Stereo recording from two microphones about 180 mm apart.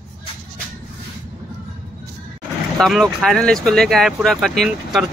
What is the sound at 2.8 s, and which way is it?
Speech, centre (ahead or behind).